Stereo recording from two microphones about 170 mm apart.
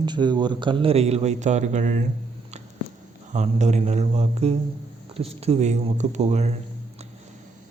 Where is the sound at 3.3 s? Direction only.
40° right (ahead or behind).